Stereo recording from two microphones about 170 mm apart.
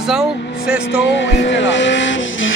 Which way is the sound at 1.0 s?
90° left.